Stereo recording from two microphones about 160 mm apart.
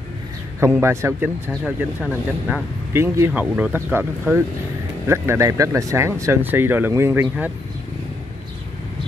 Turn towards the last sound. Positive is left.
turn(degrees=-15)  # may be behind; listen again after turning